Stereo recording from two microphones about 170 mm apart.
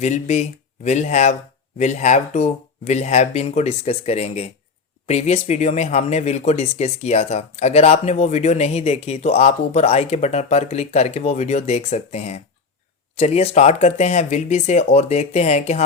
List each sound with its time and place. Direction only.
0.0 s speech: 40° left (ahead or behind)